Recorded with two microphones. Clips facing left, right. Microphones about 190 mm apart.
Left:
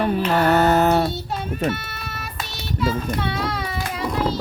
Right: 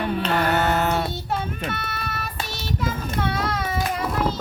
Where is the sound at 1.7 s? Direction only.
55° right (ahead or behind).